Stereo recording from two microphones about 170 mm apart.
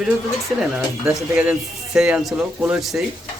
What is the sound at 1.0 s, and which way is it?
Speech, 5° right (ahead or behind).